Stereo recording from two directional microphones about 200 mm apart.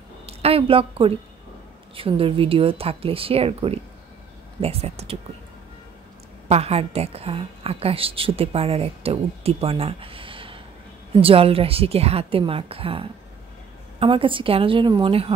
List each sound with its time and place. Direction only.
0.3 s a woman's voice: 30° right (ahead or behind)
6.5 s a woman's voice: 30° right (ahead or behind)